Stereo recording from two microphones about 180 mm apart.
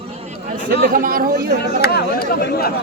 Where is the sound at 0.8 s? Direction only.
50° right (ahead or behind).